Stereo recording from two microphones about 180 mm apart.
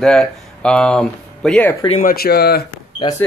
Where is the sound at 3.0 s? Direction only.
25° left (ahead or behind).